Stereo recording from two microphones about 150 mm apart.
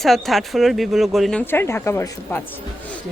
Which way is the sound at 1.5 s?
15° left (ahead or behind).